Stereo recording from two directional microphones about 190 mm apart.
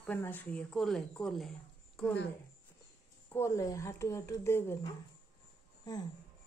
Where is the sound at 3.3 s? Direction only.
15° left (ahead or behind).